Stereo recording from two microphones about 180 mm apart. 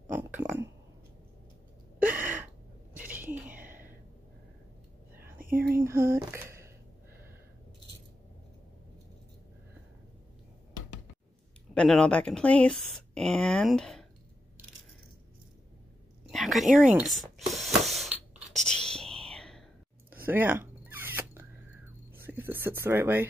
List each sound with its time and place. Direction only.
0.1 s burping: 10° right (ahead or behind)
2.1 s gasp: 45° right (ahead or behind)
3.0 s a sound: 10° right (ahead or behind)
3.5 s a sound: 50° right (ahead or behind)
5.9 s speech: 15° right (ahead or behind)
11.7 s speech: 5° left (ahead or behind)
16.3 s spray: centre (ahead or behind)
18.5 s whispering: 5° left (ahead or behind)
20.2 s zipper: 10° right (ahead or behind)
22.1 s a sound: 10° right (ahead or behind)